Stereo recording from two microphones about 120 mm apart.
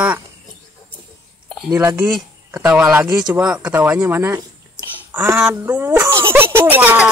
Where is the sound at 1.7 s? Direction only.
25° right (ahead or behind).